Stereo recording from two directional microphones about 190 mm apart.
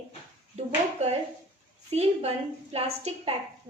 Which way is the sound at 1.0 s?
35° right (ahead or behind).